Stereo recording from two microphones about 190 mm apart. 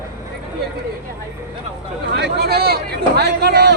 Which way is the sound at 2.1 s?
60° right (ahead or behind).